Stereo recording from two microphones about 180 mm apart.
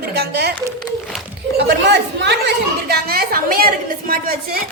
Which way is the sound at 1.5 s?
70° right (ahead or behind).